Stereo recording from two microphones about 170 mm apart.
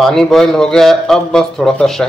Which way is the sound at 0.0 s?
Centre (ahead or behind).